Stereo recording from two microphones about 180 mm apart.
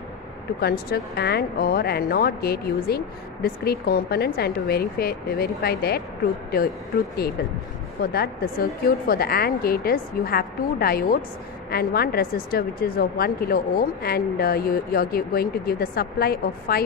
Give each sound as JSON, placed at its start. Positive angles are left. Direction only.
{"t": 0.6, "sound": "a woman's voice", "side_deg": 60}
{"t": 8.0, "sound": "a woman's voice", "side_deg": 60}